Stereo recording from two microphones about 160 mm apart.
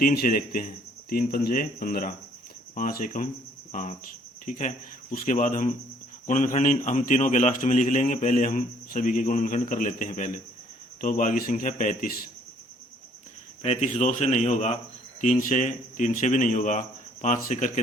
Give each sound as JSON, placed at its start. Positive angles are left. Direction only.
{"t": 0.0, "sound": "a man's voice", "side_deg": 65}
{"t": 3.7, "sound": "cricket", "side_deg": 55}
{"t": 4.4, "sound": "a man's voice", "side_deg": 50}
{"t": 13.6, "sound": "a man's voice", "side_deg": 45}